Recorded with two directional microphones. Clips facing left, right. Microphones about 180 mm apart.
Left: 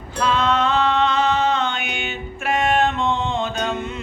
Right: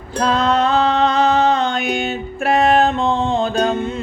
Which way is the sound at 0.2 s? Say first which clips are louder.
Right 3 dB; 35° right (ahead or behind).